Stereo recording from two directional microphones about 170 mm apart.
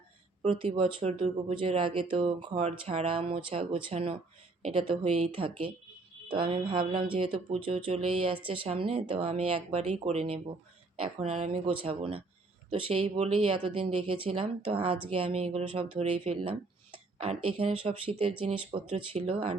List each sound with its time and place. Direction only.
0.6 s speech: 30° right (ahead or behind)
6.2 s a sound: 30° right (ahead or behind)
7.1 s speech: 30° right (ahead or behind)